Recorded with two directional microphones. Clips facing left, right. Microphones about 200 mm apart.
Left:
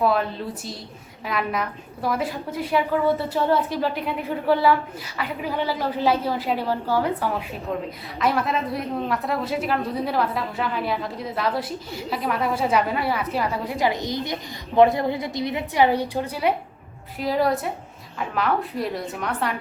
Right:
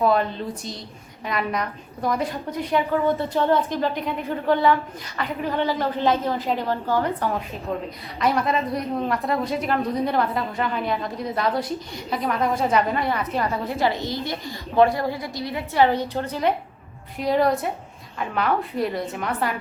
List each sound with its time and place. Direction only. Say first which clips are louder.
0.0 s a woman's voice: right 1 dB; centre (ahead or behind)